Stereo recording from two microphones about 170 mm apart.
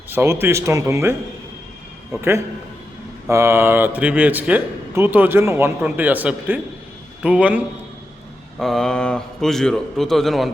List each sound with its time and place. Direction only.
0.1 s speech: 15° right (ahead or behind)
3.2 s a man's voice: 15° right (ahead or behind); by 10.5 s centre (ahead or behind)